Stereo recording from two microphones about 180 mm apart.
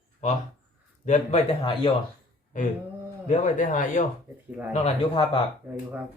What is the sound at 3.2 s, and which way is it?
Speech, 40° left (ahead or behind).